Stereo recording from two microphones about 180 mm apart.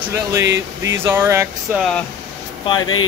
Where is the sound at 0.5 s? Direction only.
15° right (ahead or behind).